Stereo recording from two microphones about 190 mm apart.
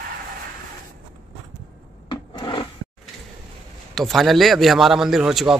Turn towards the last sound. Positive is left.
turn(degrees=-5)  # may be behind; listen again after turning